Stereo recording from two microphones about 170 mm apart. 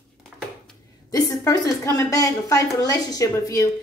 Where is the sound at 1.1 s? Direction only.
20° left (ahead or behind).